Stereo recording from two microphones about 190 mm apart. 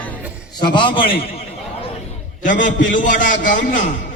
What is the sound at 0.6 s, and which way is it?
Speech, 25° left (ahead or behind).